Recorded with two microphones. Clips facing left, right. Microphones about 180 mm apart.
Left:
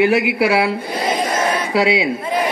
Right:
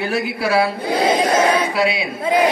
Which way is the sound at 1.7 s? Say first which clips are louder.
Left 3 dB; 25° left (ahead or behind).